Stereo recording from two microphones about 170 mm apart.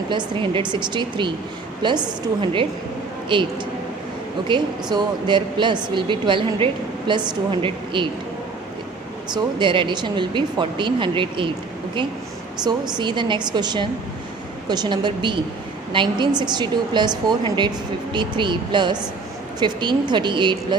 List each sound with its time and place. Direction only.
0.1 s speech: 30° right (ahead or behind)
9.3 s speech: 30° right (ahead or behind)
12.6 s speech: 25° right (ahead or behind)